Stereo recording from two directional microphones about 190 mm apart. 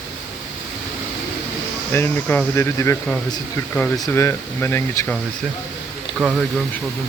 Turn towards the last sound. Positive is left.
turn(degrees=-5)  # may be behind; listen again after turning